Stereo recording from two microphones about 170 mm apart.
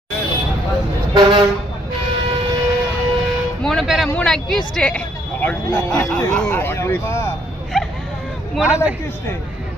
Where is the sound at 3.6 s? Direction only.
Centre (ahead or behind).